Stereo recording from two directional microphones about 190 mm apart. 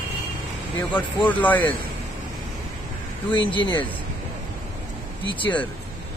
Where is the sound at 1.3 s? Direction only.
10° left (ahead or behind).